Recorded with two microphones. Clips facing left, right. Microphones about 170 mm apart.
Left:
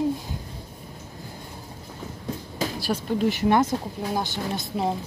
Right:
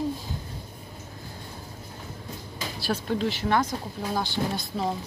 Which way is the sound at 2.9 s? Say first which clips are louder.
Left 2 dB; 10° left (ahead or behind).